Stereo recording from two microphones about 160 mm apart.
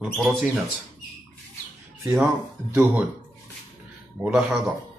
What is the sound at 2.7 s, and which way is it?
Speech, 10° right (ahead or behind).